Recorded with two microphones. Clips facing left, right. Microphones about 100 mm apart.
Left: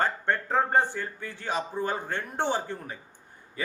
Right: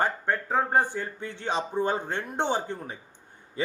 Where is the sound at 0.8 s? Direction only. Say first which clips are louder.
Right 1 dB; 20° right (ahead or behind).